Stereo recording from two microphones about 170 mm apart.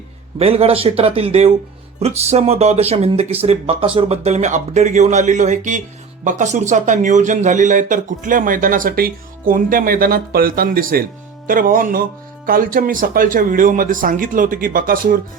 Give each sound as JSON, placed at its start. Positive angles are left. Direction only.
{"t": 0.3, "sound": "speech", "side_deg": -35}